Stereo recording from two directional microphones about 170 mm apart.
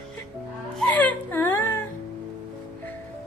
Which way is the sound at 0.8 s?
10° left (ahead or behind).